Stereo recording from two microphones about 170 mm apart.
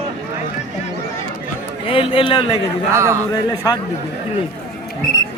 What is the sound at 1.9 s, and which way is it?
Speech, 30° left (ahead or behind).